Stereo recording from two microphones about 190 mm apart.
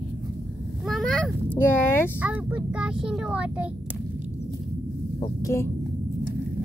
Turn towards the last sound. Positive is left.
turn(degrees=15)  # may be behind; listen again after turning